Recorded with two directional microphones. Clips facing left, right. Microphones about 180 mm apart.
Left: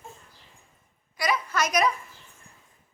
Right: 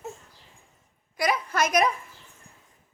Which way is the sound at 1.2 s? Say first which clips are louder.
Right 2 dB; 55° right (ahead or behind).